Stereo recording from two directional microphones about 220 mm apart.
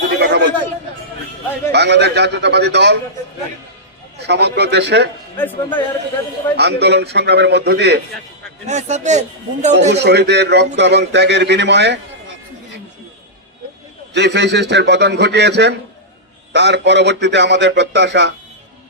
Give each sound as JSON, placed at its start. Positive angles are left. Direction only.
{"t": 0.1, "sound": "a sound", "side_deg": -50}
{"t": 1.7, "sound": "a man's voice", "side_deg": -50}
{"t": 4.2, "sound": "a man's voice", "side_deg": -50}
{"t": 5.4, "sound": "a man's voice", "side_deg": 10}
{"t": 6.6, "sound": "a man's voice", "side_deg": -50}
{"t": 8.6, "sound": "speech", "side_deg": -30}
{"t": 9.9, "sound": "a man's voice", "side_deg": -50}
{"t": 14.1, "sound": "a man's voice", "side_deg": -50}